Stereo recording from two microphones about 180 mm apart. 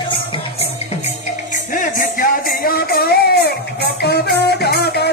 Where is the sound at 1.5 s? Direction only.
45° left (ahead or behind).